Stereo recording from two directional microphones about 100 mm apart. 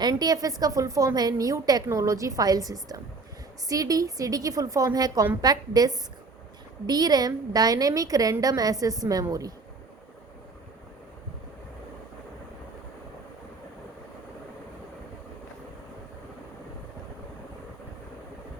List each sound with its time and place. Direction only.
0.0 s a woman's voice: 40° right (ahead or behind)